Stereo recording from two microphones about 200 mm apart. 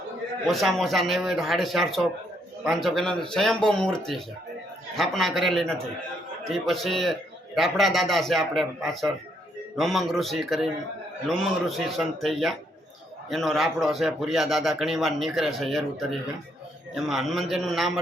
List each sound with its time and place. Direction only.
0.4 s a man's voice: centre (ahead or behind)